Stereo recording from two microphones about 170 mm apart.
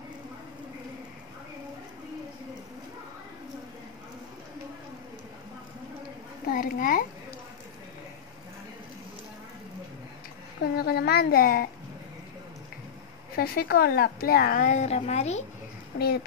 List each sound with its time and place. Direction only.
6.4 s a child's voice: 55° left (ahead or behind)
10.6 s speech: 65° left (ahead or behind)
13.4 s speech: 65° left (ahead or behind); by 15.4 s 40° left (ahead or behind)